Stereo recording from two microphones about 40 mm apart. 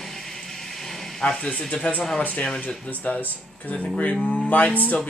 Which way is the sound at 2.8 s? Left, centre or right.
Left.